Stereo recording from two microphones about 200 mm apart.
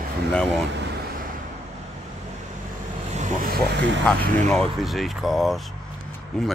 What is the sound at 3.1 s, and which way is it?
Vehicle, 40° right (ahead or behind).